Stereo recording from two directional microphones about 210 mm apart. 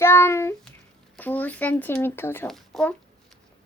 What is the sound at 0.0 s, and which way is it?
Child singing, 10° left (ahead or behind).